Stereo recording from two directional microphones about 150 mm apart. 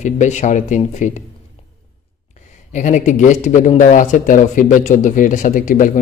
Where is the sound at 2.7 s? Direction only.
55° left (ahead or behind).